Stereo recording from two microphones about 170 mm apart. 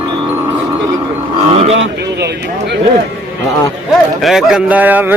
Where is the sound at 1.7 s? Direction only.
75° right (ahead or behind).